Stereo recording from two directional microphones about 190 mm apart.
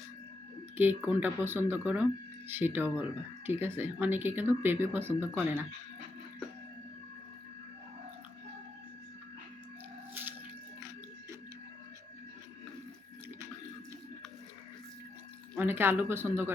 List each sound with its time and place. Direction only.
0.8 s speech: 10° right (ahead or behind)
10.8 s a sound: 15° right (ahead or behind)
15.5 s speech: 10° right (ahead or behind)